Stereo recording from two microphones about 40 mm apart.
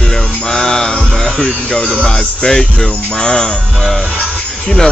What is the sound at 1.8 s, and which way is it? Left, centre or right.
Speech, left.